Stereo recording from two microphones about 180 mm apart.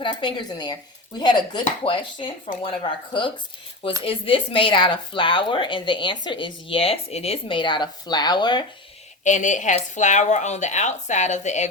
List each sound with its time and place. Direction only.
0.0 s speech: 25° left (ahead or behind)
9.2 s a woman's voice: 45° left (ahead or behind)